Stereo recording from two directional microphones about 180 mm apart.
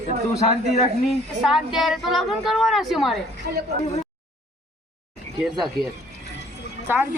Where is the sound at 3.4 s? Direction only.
55° right (ahead or behind).